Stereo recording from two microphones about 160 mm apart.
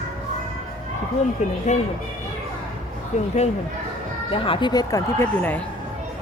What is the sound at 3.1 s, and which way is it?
Speech, 45° left (ahead or behind).